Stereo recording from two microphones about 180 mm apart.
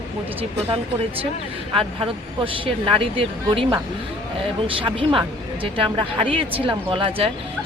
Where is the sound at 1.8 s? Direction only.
30° right (ahead or behind).